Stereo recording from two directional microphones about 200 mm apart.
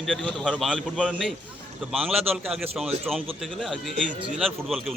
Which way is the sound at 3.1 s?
Centre (ahead or behind).